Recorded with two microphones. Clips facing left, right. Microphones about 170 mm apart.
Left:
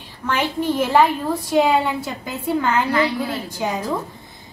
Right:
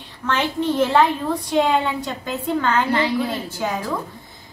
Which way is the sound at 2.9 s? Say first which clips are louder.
Even; 25° right (ahead or behind).